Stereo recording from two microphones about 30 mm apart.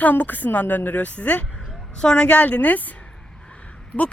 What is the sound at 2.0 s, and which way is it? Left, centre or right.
Speech, left.